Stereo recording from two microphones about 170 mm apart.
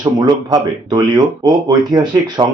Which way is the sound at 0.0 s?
25° right (ahead or behind).